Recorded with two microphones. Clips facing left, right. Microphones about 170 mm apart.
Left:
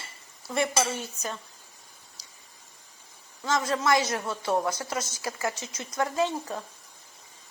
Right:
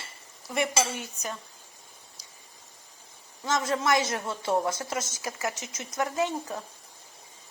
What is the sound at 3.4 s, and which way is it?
Speech, 20° right (ahead or behind).